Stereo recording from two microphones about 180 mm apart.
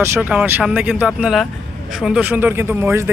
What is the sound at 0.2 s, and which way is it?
Speech, 5° right (ahead or behind).